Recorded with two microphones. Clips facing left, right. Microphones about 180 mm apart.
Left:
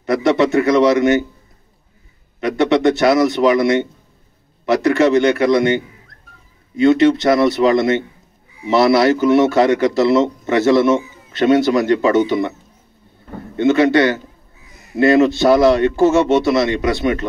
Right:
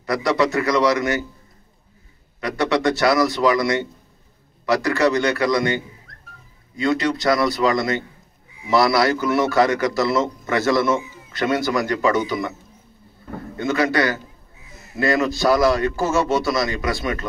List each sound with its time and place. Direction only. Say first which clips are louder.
0.0 s speech: left 5 dB; 25° left (ahead or behind)
2.4 s speech: left 6 dB; 20° left (ahead or behind)
6.8 s speech: left 9 dB; 25° left (ahead or behind)
13.6 s speech: left 7 dB; 25° left (ahead or behind)